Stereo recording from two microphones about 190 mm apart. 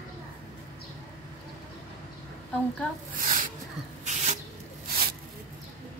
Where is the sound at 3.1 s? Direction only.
45° right (ahead or behind).